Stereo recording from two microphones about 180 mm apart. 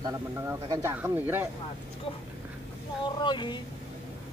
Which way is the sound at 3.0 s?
25° left (ahead or behind).